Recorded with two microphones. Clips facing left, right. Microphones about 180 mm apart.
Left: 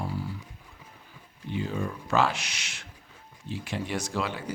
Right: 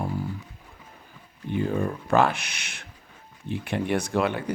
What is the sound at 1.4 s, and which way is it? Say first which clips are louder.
Speech: right 5 dB; 55° right (ahead or behind).